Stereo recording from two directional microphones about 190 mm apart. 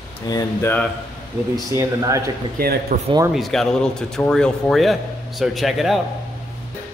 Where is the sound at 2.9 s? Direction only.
40° right (ahead or behind).